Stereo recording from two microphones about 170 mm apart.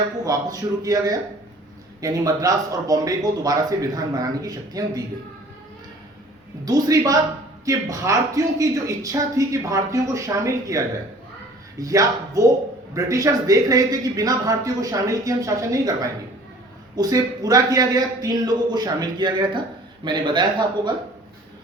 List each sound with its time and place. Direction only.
0.3 s speech: 20° right (ahead or behind)
6.7 s speech: 20° right (ahead or behind)